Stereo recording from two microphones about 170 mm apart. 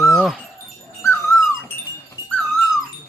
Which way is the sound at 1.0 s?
15° left (ahead or behind).